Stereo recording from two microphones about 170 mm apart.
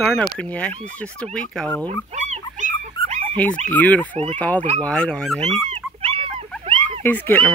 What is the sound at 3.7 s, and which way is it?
Speech, 10° left (ahead or behind).